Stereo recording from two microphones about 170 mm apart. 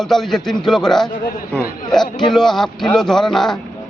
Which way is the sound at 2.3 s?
Centre (ahead or behind).